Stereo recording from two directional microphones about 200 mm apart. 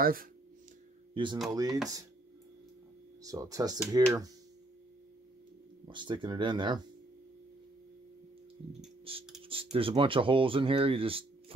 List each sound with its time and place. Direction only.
0.0 s speech: 45° right (ahead or behind)
1.1 s speech: 25° right (ahead or behind)
3.2 s speech: 15° right (ahead or behind)
5.9 s speech: 25° right (ahead or behind)
9.4 s speech: 25° right (ahead or behind)